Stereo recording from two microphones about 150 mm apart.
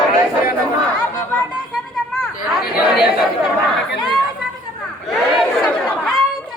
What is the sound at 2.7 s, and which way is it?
Chatter, 5° right (ahead or behind).